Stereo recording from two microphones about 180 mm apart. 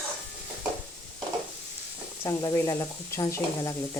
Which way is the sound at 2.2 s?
20° left (ahead or behind).